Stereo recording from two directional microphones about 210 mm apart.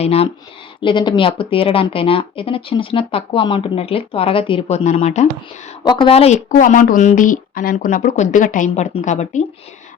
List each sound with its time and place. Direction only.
0.0 s a woman's voice: 30° left (ahead or behind)
5.8 s speech: 20° left (ahead or behind)